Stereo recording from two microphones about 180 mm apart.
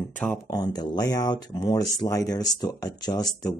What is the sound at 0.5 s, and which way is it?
Speech, 20° left (ahead or behind).